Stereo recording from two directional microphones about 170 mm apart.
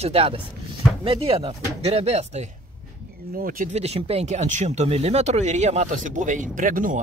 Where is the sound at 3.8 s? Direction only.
35° right (ahead or behind); by 7.0 s 50° right (ahead or behind).